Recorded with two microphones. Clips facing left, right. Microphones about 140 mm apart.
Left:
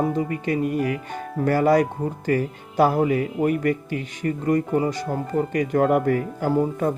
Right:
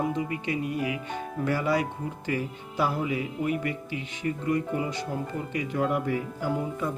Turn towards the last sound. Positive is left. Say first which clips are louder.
# left 8 dB
turn(degrees=50)  # may be behind; listen again after turning